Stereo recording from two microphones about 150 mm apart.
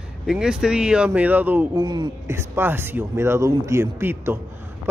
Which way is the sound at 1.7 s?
25° right (ahead or behind).